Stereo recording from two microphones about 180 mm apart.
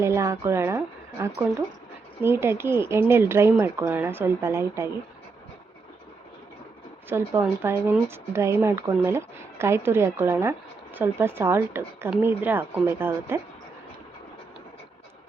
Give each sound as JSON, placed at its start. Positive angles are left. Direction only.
{"t": 0.0, "sound": "speech", "side_deg": -15}
{"t": 7.1, "sound": "speech", "side_deg": -15}